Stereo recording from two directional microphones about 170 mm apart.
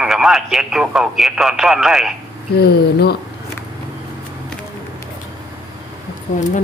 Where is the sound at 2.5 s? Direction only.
70° left (ahead or behind).